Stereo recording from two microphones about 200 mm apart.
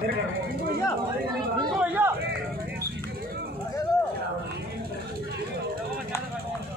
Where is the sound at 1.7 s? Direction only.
5° right (ahead or behind).